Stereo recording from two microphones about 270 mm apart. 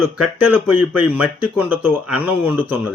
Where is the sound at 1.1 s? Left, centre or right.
Centre.